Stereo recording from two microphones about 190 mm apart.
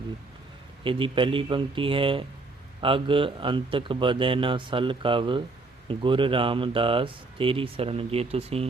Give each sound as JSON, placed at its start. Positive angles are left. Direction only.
{"t": 0.9, "sound": "speech", "side_deg": -25}